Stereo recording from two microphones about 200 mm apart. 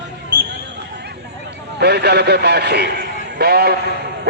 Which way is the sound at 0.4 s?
60° right (ahead or behind).